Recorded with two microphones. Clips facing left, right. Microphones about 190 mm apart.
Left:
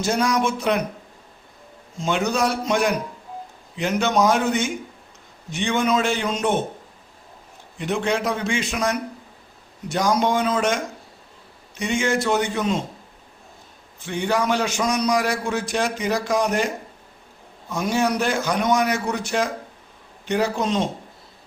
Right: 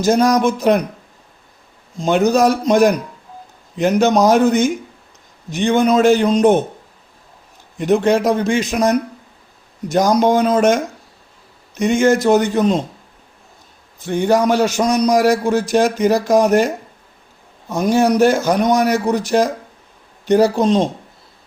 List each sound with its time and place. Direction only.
0.0 s a man's voice: 40° right (ahead or behind)
2.0 s a man's voice: 40° right (ahead or behind)
7.8 s a man's voice: 45° right (ahead or behind)
14.0 s a man's voice: 40° right (ahead or behind)